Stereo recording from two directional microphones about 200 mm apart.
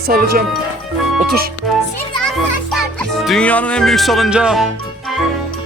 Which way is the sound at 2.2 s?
5° left (ahead or behind).